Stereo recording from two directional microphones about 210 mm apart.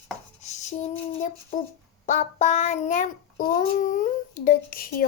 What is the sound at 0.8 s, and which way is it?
Child singing, 35° left (ahead or behind).